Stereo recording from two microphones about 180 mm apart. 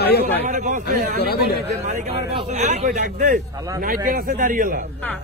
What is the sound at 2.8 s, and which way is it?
A man's voice, 50° right (ahead or behind).